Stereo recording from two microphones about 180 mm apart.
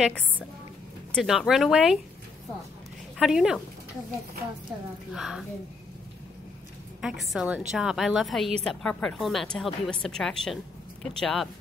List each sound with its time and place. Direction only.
0.0 s a woman's voice: 5° left (ahead or behind)
3.2 s a woman's voice: 5° right (ahead or behind)
5.1 s a woman's voice: centre (ahead or behind)
7.0 s a woman's voice: 5° right (ahead or behind)